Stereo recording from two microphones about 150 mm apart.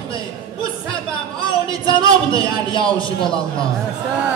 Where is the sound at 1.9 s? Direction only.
35° left (ahead or behind).